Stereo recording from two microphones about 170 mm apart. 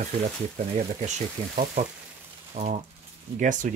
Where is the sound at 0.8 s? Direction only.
45° right (ahead or behind).